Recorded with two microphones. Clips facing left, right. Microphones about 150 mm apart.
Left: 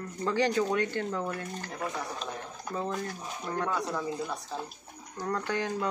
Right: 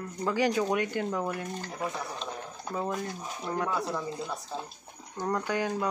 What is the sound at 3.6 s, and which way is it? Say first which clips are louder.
Speech: even; 10° right (ahead or behind).